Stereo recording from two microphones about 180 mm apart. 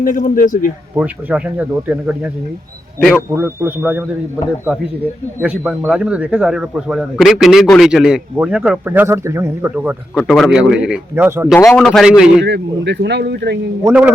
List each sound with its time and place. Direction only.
0.0 s a man's voice: 45° left (ahead or behind)
0.9 s speech: 5° right (ahead or behind)
3.3 s speech: 10° right (ahead or behind)
5.4 s speech: 5° right (ahead or behind)
10.2 s speech: centre (ahead or behind)
11.5 s a man's voice: 15° left (ahead or behind)
11.8 s speech: 5° left (ahead or behind)
12.4 s speech: 75° right (ahead or behind)
13.8 s speech: 10° right (ahead or behind)